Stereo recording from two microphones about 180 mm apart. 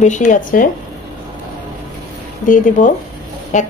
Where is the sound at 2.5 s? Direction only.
45° left (ahead or behind).